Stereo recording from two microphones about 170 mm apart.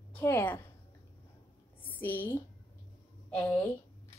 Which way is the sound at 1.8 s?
10° left (ahead or behind).